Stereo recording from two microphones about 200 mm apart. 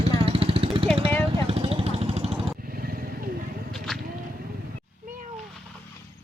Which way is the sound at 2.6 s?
45° right (ahead or behind).